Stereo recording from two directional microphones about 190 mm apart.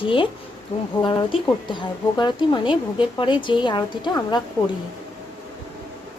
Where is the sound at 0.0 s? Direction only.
25° left (ahead or behind).